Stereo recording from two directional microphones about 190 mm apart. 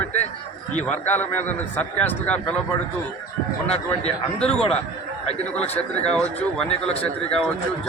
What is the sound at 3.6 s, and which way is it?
Speech, 35° left (ahead or behind).